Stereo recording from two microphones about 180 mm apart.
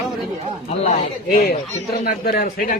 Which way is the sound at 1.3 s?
55° left (ahead or behind).